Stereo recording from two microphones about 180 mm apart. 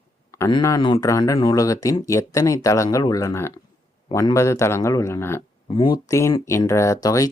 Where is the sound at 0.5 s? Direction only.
25° left (ahead or behind).